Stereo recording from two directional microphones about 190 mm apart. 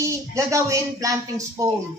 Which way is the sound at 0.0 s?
15° right (ahead or behind).